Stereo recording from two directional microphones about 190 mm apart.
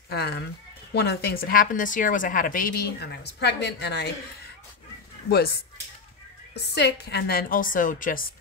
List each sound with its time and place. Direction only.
0.1 s a woman's voice: 60° left (ahead or behind)
6.5 s a woman's voice: 65° left (ahead or behind); by 8.3 s 45° left (ahead or behind)